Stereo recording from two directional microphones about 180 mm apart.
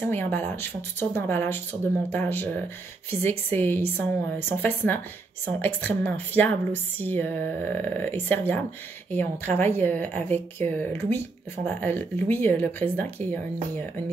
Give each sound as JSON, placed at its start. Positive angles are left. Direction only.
{"t": 0.1, "sound": "a woman's voice", "side_deg": 10}